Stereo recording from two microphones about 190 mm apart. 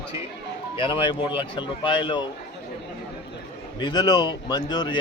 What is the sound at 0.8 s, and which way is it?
A man's voice, 25° left (ahead or behind).